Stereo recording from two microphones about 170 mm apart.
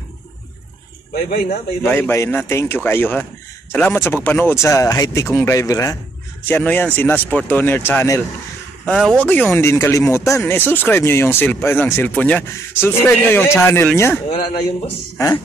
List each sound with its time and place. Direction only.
1.1 s speech: 65° left (ahead or behind)
1.9 s speech: 15° left (ahead or behind)